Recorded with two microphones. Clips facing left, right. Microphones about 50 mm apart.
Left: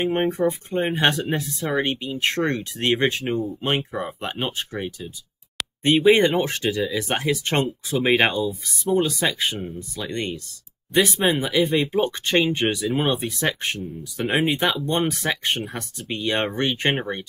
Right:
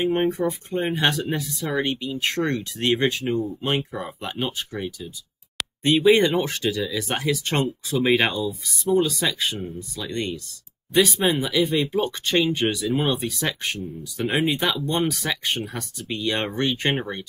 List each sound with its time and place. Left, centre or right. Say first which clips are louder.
0.0 s speech: left 1 dB; centre
0.9 s speech: left 2 dB; left
5.9 s speech: left 1 dB; centre
9.5 s speech: left 1 dB; centre